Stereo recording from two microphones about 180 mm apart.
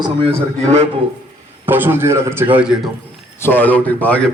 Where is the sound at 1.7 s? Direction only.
10° right (ahead or behind).